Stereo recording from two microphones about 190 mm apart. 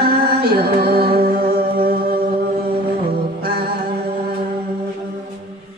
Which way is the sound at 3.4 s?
55° right (ahead or behind).